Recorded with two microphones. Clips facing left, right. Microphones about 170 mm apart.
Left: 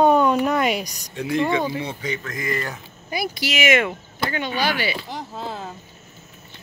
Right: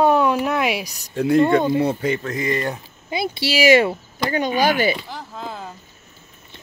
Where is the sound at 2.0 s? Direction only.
30° right (ahead or behind).